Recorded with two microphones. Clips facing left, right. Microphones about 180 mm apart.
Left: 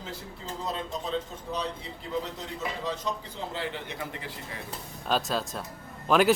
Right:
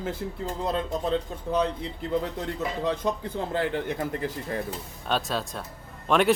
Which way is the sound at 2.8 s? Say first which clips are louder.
Right 6 dB; 55° right (ahead or behind).